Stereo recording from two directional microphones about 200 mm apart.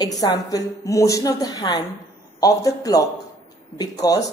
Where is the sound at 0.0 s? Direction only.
20° left (ahead or behind).